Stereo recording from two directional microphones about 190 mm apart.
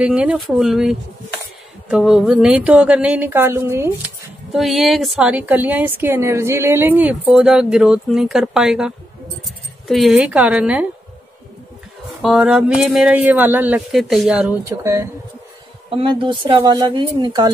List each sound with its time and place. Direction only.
0.0 s a woman's voice: 5° right (ahead or behind)
4.5 s a woman's voice: centre (ahead or behind)
12.2 s a woman's voice: centre (ahead or behind)
14.7 s speech: 15° right (ahead or behind)
15.9 s speech: 25° right (ahead or behind)